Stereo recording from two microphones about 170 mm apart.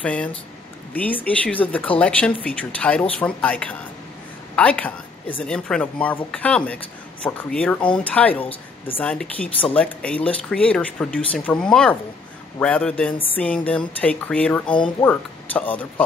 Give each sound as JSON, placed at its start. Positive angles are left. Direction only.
{"t": 0.0, "sound": "speech", "side_deg": 10}
{"t": 8.5, "sound": "speech", "side_deg": 35}
{"t": 9.0, "sound": "speech", "side_deg": 5}